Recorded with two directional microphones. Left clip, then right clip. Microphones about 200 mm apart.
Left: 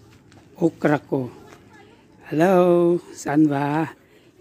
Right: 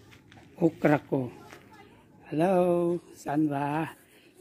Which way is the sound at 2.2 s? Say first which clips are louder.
Left 8 dB; 35° left (ahead or behind).